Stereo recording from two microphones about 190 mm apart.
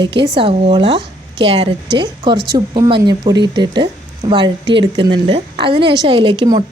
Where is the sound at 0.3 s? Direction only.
25° right (ahead or behind).